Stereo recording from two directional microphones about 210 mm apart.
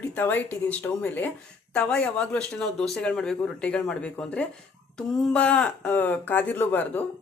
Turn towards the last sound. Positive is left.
turn(degrees=10)  # may be behind; listen again after turning